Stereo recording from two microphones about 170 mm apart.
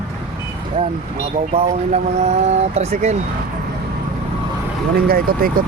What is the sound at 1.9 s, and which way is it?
Speech, 40° right (ahead or behind).